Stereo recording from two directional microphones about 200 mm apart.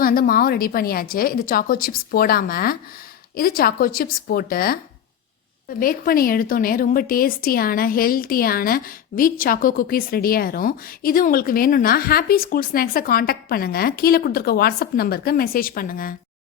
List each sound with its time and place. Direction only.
0.0 s speech: 45° left (ahead or behind)
5.8 s speech: 45° left (ahead or behind)